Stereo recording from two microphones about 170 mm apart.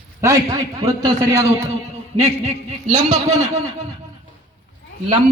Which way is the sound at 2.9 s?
45° right (ahead or behind).